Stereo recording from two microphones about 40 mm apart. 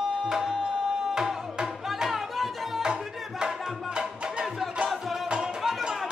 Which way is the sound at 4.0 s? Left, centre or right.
Right.